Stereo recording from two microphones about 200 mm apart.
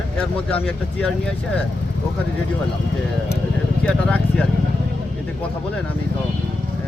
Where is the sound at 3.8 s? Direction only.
5° left (ahead or behind).